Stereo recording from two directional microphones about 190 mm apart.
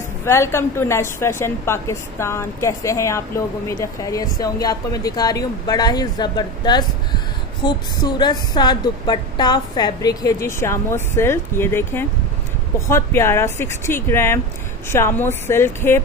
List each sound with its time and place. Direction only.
0.2 s a woman's voice: 15° left (ahead or behind)